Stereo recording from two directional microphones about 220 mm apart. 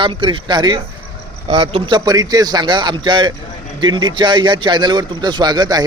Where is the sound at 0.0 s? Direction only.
20° right (ahead or behind).